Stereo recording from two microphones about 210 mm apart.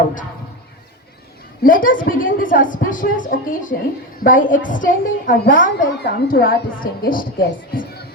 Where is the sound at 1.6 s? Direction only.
40° left (ahead or behind).